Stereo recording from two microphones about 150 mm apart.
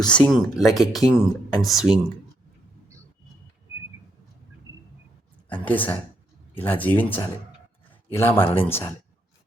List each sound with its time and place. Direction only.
0.0 s speech: 5° left (ahead or behind)
5.6 s speech: 10° left (ahead or behind)